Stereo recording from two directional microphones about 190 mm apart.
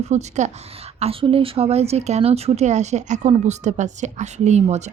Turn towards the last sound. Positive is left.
turn(degrees=-35)  # may be behind; listen again after turning